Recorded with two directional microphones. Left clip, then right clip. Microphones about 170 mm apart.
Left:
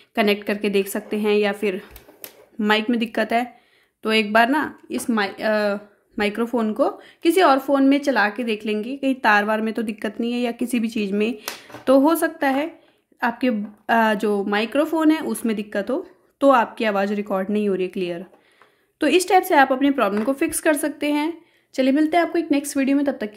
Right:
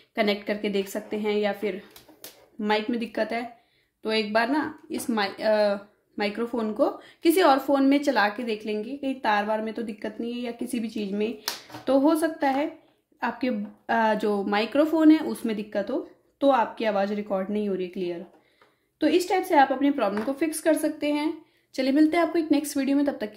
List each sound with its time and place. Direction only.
0.1 s speech: 25° left (ahead or behind)
21.7 s speech: 25° left (ahead or behind)